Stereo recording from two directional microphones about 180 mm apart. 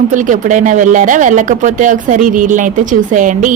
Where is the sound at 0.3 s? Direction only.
45° right (ahead or behind).